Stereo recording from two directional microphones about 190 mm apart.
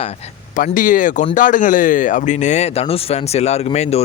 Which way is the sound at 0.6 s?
45° left (ahead or behind).